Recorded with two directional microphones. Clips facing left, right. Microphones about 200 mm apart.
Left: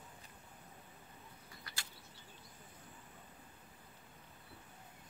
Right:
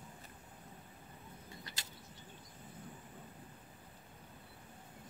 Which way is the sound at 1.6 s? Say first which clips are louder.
Right 2 dB; 20° right (ahead or behind).